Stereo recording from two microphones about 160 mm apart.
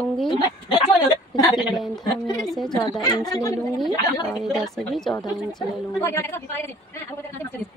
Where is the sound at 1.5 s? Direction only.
Centre (ahead or behind).